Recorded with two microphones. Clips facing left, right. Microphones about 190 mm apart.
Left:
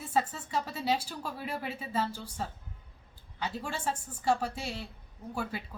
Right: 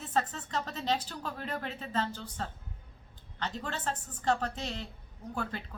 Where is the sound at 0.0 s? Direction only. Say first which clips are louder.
Left 1 dB; 10° left (ahead or behind).